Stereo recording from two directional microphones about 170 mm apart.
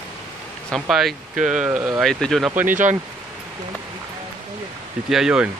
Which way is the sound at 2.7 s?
45° right (ahead or behind).